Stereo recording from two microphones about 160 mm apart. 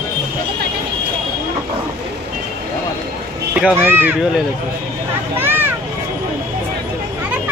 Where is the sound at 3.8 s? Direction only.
10° right (ahead or behind).